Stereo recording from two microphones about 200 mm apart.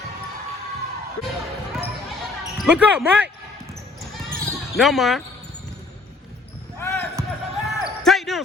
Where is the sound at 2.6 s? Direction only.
5° right (ahead or behind).